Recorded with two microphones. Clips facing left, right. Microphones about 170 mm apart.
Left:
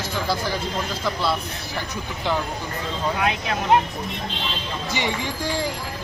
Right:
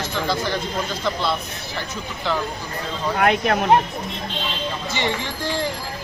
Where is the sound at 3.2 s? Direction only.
60° right (ahead or behind).